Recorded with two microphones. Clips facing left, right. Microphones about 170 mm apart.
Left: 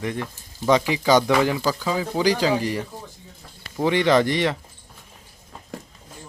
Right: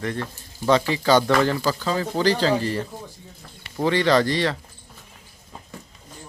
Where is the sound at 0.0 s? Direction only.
15° left (ahead or behind).